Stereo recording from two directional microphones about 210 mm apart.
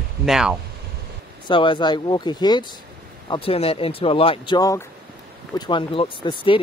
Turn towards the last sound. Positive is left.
turn(degrees=25)  # may be behind; listen again after turning